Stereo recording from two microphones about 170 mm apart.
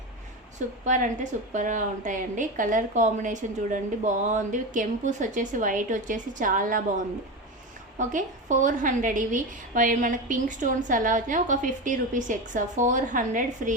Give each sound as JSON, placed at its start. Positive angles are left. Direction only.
{"t": 0.9, "sound": "a woman's voice", "side_deg": -50}